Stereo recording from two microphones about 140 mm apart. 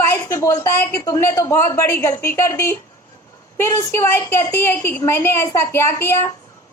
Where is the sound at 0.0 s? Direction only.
20° left (ahead or behind).